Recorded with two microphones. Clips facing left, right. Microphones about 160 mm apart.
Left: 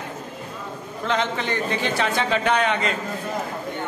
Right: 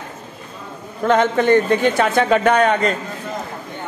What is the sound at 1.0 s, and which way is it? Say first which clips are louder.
A man's voice: right 9 dB; 50° right (ahead or behind).